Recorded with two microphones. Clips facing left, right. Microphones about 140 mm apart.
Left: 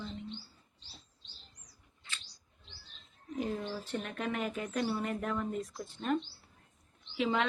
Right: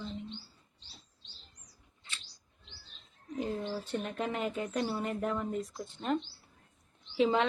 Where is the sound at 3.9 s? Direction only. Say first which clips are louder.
Right 1 dB; 30° right (ahead or behind).